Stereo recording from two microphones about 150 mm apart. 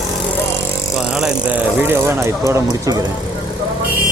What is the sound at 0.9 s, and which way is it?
Speech, 5° right (ahead or behind).